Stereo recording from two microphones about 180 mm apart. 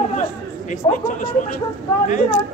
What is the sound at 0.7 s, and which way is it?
Speech, 45° left (ahead or behind).